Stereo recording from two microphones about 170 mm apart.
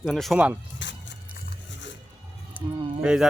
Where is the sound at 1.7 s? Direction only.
90° left.